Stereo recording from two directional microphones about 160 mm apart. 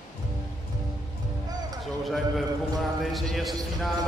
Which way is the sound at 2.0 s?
Centre (ahead or behind).